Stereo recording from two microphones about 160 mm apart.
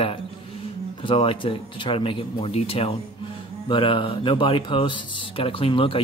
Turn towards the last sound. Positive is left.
turn(degrees=35)  # may be behind; listen again after turning